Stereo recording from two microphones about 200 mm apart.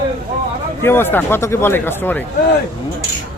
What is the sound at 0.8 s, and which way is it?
Speech, 10° left (ahead or behind).